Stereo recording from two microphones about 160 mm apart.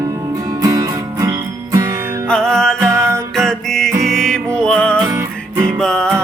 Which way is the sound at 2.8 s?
15° right (ahead or behind).